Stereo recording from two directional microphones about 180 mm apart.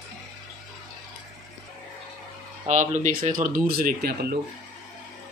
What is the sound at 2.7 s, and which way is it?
Speech, 40° right (ahead or behind).